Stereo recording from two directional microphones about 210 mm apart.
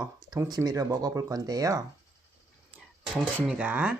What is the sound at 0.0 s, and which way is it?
Speech, 15° right (ahead or behind).